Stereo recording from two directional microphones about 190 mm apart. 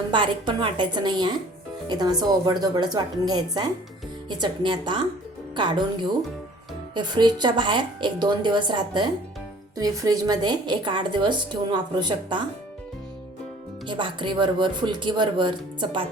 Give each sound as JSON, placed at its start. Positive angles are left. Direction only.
{"t": 0.1, "sound": "a woman's voice", "side_deg": -25}
{"t": 13.8, "sound": "a woman's voice", "side_deg": -25}